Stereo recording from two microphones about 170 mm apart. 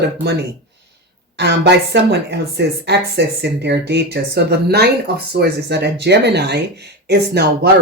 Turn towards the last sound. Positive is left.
turn(degrees=-75)  # may be behind; listen again after turning